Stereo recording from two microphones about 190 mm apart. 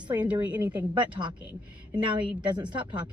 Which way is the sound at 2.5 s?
25° right (ahead or behind).